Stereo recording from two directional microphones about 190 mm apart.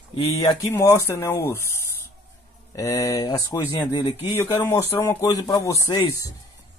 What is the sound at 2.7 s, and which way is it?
Speech, 15° left (ahead or behind).